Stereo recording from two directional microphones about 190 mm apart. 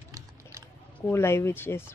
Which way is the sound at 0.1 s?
15° right (ahead or behind).